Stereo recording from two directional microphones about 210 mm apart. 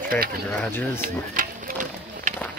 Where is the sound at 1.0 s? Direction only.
40° right (ahead or behind).